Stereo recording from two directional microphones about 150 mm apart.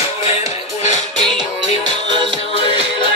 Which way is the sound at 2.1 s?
30° right (ahead or behind).